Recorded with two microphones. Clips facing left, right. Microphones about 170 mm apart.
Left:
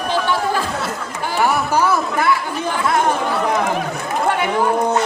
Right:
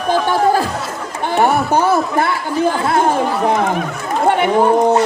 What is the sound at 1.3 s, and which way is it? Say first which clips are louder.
A man's voice: right 4 dB; 25° right (ahead or behind).